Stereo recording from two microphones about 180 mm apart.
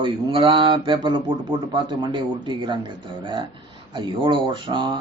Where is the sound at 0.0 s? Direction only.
30° right (ahead or behind).